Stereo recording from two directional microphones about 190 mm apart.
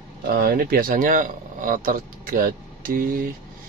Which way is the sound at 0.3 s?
50° right (ahead or behind).